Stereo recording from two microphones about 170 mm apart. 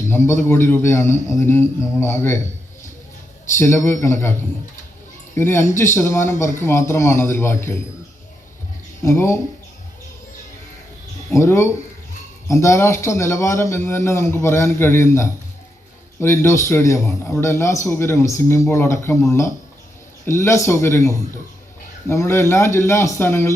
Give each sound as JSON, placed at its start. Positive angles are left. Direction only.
{"t": 0.1, "sound": "a man's voice", "side_deg": 15}
{"t": 3.6, "sound": "a man's voice", "side_deg": 15}
{"t": 5.4, "sound": "a man's voice", "side_deg": 15}
{"t": 9.0, "sound": "a man's voice", "side_deg": 15}
{"t": 11.3, "sound": "a man's voice", "side_deg": 15}